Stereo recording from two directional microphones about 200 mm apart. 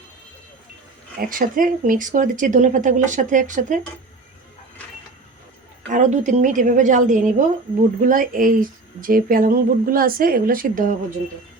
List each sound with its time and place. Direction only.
1.2 s speech: 45° right (ahead or behind)
5.9 s speech: 40° right (ahead or behind)